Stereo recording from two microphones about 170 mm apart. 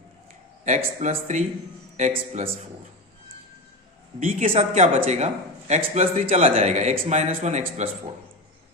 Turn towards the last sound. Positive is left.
turn(degrees=-40)  # may be behind; listen again after turning